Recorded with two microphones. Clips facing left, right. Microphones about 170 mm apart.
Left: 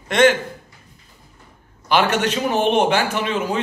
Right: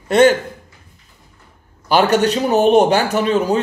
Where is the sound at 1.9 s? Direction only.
40° right (ahead or behind).